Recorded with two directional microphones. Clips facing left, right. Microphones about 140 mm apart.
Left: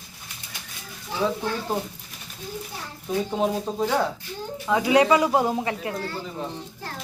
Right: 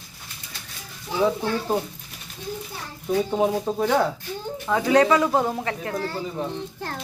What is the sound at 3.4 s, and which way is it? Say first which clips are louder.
Speech: right 2 dB; 10° right (ahead or behind).